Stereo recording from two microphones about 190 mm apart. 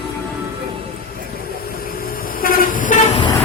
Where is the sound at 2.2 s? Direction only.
50° left (ahead or behind).